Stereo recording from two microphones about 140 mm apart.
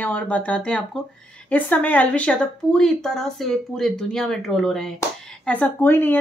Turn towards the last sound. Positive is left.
turn(degrees=15)  # may be behind; listen again after turning